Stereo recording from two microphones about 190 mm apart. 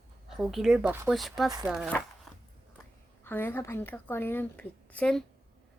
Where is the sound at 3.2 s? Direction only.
10° left (ahead or behind).